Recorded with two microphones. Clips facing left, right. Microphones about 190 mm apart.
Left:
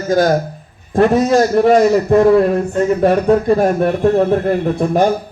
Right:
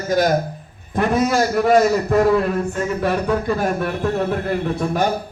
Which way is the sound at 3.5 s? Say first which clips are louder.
Left 7 dB; 45° left (ahead or behind).